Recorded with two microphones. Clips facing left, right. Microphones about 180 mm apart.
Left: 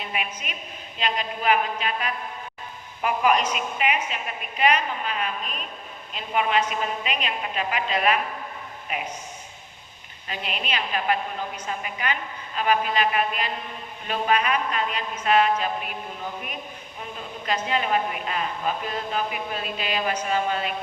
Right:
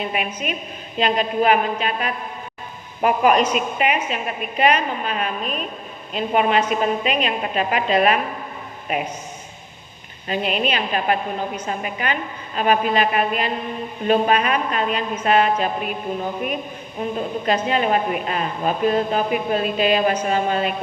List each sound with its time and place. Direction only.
0.0 s a woman's voice: 50° right (ahead or behind)
10.2 s speech: 55° right (ahead or behind)
11.6 s a woman's voice: 45° right (ahead or behind)
17.0 s a woman's voice: 50° right (ahead or behind)